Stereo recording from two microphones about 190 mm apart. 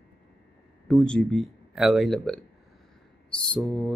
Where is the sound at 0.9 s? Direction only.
5° left (ahead or behind).